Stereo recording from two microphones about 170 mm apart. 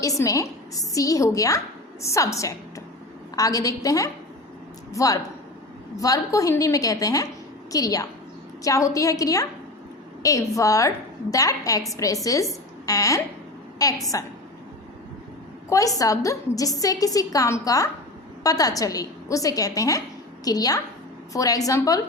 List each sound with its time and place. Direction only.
0.0 s a woman's voice: 20° left (ahead or behind)
15.7 s a woman's voice: 20° left (ahead or behind)